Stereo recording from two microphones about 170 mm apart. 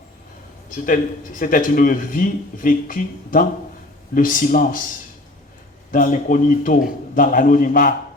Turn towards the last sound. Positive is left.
turn(degrees=55)  # may be behind; listen again after turning